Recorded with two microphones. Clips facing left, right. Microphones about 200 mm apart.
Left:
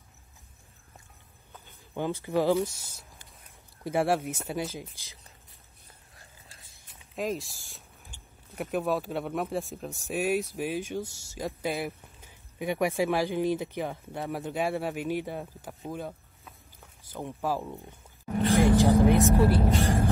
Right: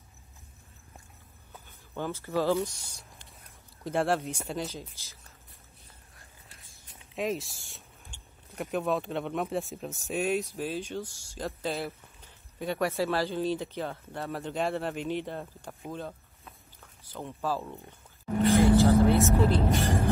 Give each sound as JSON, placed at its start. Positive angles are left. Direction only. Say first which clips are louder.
{"t": 2.0, "sound": "speech", "louder": "left 3 dB", "side_deg": 15}
{"t": 7.2, "sound": "speech", "louder": "even", "side_deg": 0}
{"t": 15.9, "sound": "a sound", "louder": "left 2 dB", "side_deg": 10}
{"t": 17.1, "sound": "speech", "louder": "left 1 dB", "side_deg": 15}
{"t": 18.6, "sound": "vehicle", "louder": "left 1 dB", "side_deg": 15}